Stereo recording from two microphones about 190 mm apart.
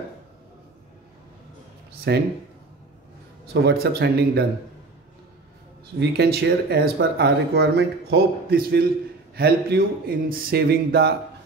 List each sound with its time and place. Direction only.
2.1 s speech: 60° right (ahead or behind)
3.6 s speech: 60° right (ahead or behind)
5.9 s speech: 60° right (ahead or behind)